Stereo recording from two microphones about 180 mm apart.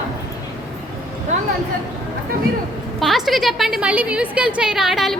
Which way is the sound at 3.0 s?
Centre (ahead or behind).